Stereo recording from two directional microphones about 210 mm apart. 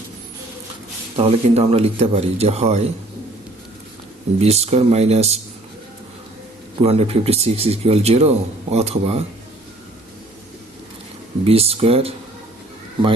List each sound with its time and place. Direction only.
1.1 s speech: 30° right (ahead or behind)
4.4 s speech: 30° right (ahead or behind)
6.7 s speech: 30° right (ahead or behind)
11.4 s speech: 30° right (ahead or behind)